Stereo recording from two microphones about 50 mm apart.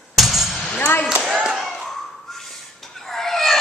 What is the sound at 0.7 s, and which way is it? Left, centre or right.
Speech, left.